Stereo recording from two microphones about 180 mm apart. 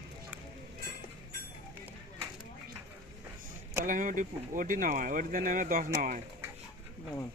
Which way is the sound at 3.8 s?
50° right (ahead or behind).